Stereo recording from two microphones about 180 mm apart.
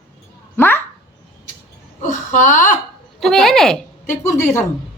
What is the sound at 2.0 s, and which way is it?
Speech, 45° left (ahead or behind).